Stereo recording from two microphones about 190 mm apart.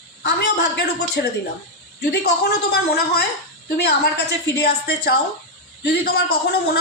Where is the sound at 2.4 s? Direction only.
60° left (ahead or behind).